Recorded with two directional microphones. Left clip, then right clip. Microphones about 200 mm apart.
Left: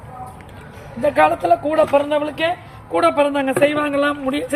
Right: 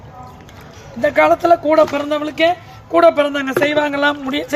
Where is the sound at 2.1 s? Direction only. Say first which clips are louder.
Right 3 dB; 55° right (ahead or behind).